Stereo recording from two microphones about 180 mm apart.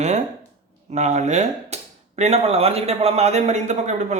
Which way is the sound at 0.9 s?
40° right (ahead or behind).